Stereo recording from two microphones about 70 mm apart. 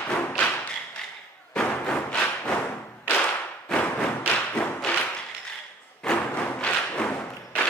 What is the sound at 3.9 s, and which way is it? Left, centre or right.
Thump, left.